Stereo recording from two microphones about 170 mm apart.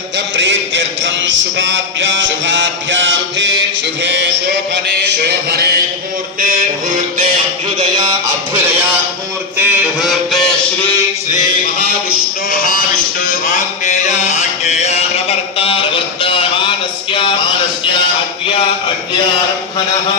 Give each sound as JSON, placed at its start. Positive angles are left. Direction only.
{"t": 0.3, "sound": "a sound", "side_deg": -90}
{"t": 4.0, "sound": "music", "side_deg": -90}
{"t": 6.4, "sound": "music", "side_deg": -55}
{"t": 9.6, "sound": "a sound", "side_deg": 0}
{"t": 12.5, "sound": "music", "side_deg": 55}
{"t": 13.2, "sound": "mantra", "side_deg": 45}